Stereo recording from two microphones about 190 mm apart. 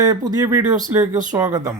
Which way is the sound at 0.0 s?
20° right (ahead or behind).